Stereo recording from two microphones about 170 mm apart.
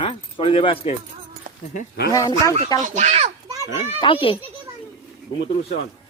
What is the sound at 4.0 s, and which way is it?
Speech, 30° left (ahead or behind).